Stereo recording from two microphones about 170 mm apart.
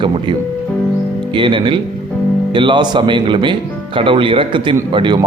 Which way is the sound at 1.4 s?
30° right (ahead or behind).